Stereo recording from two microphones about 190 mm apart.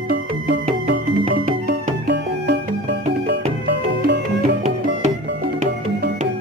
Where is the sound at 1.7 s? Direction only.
55° right (ahead or behind).